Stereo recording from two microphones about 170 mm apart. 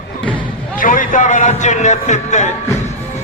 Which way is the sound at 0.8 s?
50° left (ahead or behind).